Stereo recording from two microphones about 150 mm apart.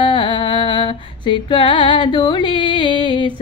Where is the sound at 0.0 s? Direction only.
30° left (ahead or behind).